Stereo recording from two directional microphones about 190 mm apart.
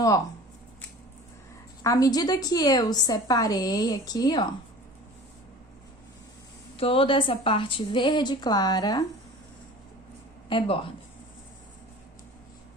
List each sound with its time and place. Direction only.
1.8 s a woman's voice: 20° left (ahead or behind)
6.7 s a woman's voice: 30° left (ahead or behind)
10.5 s a woman's voice: 25° left (ahead or behind)